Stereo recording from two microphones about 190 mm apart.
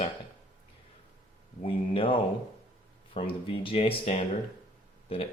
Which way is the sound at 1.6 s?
25° left (ahead or behind).